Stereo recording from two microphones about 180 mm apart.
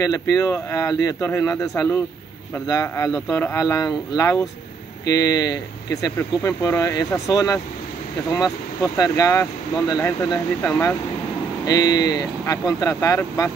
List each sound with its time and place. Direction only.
0.0 s speech: 20° left (ahead or behind)
8.9 s speech: 20° left (ahead or behind)